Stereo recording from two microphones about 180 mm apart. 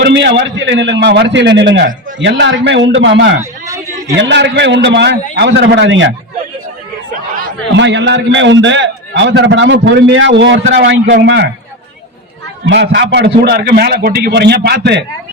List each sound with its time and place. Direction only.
0.0 s a man's voice: 70° right (ahead or behind)
2.1 s a man's voice: 90° right
4.2 s a man's voice: 75° right (ahead or behind)
7.8 s a man's voice: 80° right
12.6 s a man's voice: 80° right